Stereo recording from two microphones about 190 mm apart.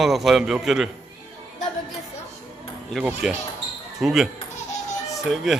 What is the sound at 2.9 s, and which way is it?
A child's voice, 5° right (ahead or behind).